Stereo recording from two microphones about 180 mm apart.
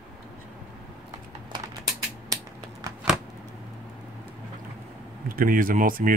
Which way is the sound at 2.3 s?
20° right (ahead or behind).